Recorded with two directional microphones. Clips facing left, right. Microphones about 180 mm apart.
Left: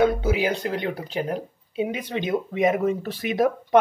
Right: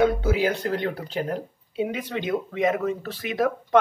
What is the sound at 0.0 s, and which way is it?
Speech, 15° left (ahead or behind).